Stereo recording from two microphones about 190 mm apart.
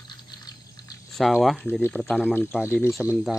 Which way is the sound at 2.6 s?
15° left (ahead or behind).